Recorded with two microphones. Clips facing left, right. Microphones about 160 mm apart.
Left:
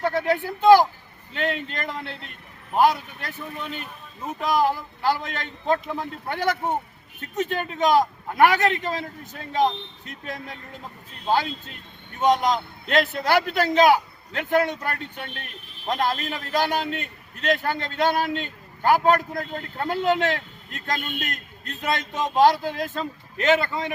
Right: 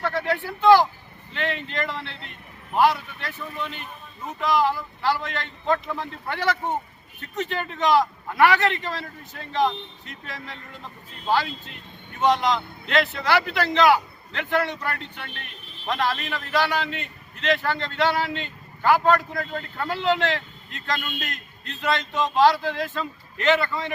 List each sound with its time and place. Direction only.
0.0 s a man's voice: 50° left (ahead or behind)